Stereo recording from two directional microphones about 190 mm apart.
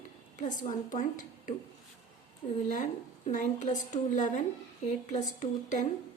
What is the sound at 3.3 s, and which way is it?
A woman's voice, 40° left (ahead or behind).